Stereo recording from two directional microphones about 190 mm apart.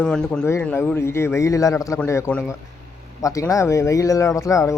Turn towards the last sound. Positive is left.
turn(degrees=15)  # may be behind; listen again after turning